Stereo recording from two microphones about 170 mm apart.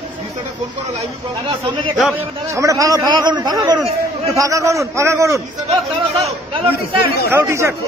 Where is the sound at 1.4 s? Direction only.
35° right (ahead or behind).